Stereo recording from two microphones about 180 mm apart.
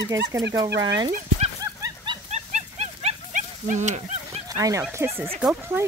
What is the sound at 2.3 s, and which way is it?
Wild animals, 35° right (ahead or behind).